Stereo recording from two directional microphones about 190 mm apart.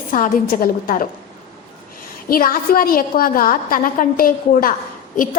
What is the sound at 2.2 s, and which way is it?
A woman's voice, 50° left (ahead or behind).